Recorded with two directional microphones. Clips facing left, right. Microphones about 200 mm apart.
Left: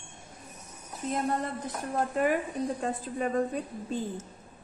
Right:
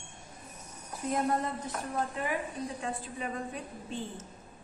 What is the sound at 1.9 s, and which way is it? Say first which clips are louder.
A woman's voice: left 7 dB; 50° left (ahead or behind).